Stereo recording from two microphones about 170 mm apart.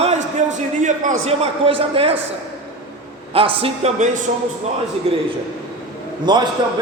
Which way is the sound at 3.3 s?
35° right (ahead or behind).